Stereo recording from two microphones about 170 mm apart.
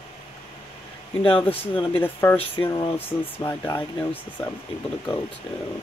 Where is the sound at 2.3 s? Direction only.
25° left (ahead or behind).